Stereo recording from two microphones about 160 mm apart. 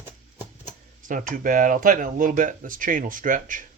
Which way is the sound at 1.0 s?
55° right (ahead or behind).